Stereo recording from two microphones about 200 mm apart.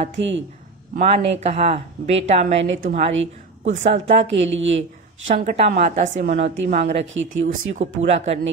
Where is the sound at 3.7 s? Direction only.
35° right (ahead or behind).